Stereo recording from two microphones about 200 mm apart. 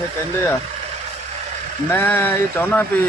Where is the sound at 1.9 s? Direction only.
10° left (ahead or behind).